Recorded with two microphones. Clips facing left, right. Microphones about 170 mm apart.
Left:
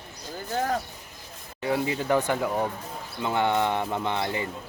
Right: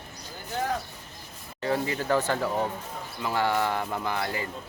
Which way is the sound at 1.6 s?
15° left (ahead or behind).